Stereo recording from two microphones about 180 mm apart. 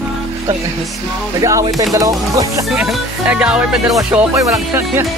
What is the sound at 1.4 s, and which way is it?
Music, 20° right (ahead or behind).